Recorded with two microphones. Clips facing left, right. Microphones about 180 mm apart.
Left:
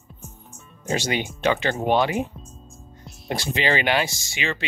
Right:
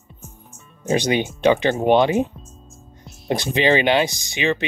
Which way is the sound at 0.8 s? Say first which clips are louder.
Right 6 dB; 20° right (ahead or behind).